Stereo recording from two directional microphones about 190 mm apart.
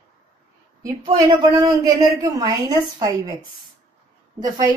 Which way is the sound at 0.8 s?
20° right (ahead or behind).